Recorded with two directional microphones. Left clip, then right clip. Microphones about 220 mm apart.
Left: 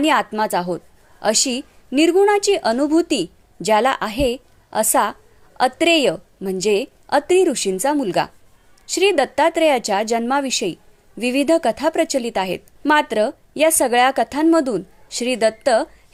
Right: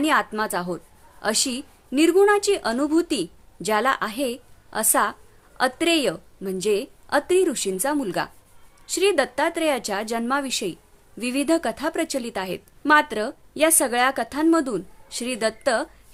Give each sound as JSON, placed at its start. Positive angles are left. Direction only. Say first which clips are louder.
{"t": 0.0, "sound": "a woman's voice", "louder": "left 4 dB", "side_deg": 15}